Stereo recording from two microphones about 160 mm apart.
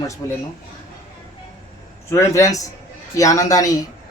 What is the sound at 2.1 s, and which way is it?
A man's voice, 20° left (ahead or behind).